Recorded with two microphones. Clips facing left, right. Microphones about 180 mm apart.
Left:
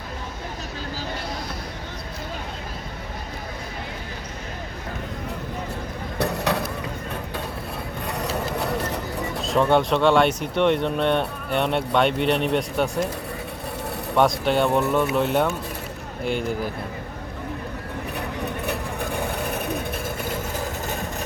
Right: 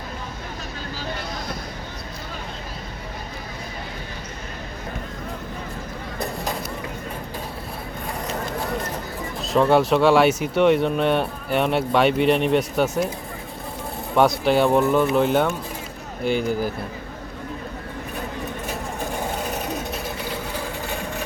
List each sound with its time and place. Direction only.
6.1 s vehicle: 70° left (ahead or behind)
8.0 s vehicle: 70° left (ahead or behind)
9.4 s speech: centre (ahead or behind)
14.2 s speech: centre (ahead or behind)
18.6 s vehicle: 60° left (ahead or behind); by 21.2 s 45° left (ahead or behind)